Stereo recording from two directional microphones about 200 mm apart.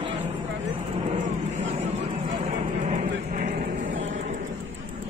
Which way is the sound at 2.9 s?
40° right (ahead or behind).